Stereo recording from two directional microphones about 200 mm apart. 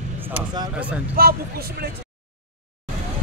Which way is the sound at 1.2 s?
50° right (ahead or behind).